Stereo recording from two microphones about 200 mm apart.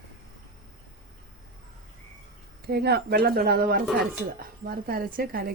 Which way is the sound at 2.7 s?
55° right (ahead or behind).